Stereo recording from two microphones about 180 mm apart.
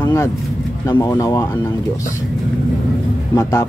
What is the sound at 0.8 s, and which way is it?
Speech, 20° left (ahead or behind).